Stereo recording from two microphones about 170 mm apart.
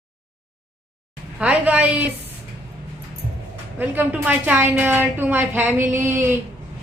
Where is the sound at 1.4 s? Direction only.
10° right (ahead or behind).